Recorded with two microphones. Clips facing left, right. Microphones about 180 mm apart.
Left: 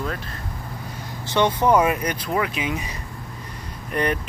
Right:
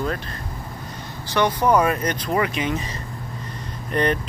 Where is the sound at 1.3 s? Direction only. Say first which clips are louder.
Left 1 dB; 25° left (ahead or behind).